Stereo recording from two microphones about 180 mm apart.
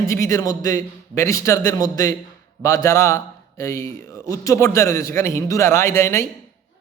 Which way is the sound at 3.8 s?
50° right (ahead or behind).